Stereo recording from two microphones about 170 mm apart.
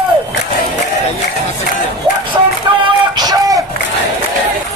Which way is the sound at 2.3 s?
25° right (ahead or behind).